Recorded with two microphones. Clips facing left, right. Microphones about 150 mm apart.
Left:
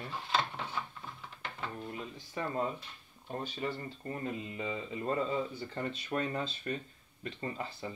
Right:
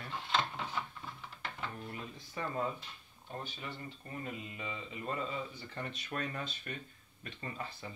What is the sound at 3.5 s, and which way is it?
Speech, 40° left (ahead or behind).